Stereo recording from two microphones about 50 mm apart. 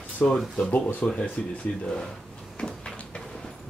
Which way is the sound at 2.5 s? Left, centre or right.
Centre.